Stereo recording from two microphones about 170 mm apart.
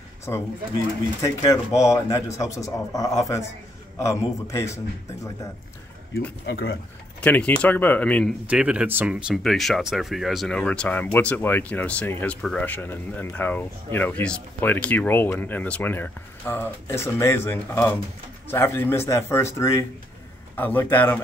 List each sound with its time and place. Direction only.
0.3 s a man's voice: 20° left (ahead or behind)
6.4 s speech: 70° left (ahead or behind)
7.2 s speech: 10° left (ahead or behind)
8.5 s speech: 5° right (ahead or behind); by 21.2 s 10° left (ahead or behind)